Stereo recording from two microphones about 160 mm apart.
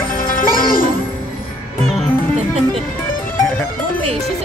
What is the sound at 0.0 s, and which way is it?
Music, 60° left (ahead or behind).